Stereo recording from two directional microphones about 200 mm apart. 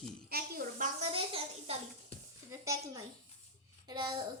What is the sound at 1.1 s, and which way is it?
Speech, 30° right (ahead or behind).